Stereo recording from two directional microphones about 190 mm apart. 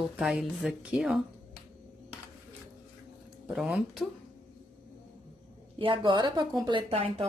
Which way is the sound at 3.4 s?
Centre (ahead or behind).